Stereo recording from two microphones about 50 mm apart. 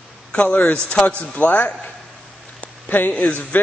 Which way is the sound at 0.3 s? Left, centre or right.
Left.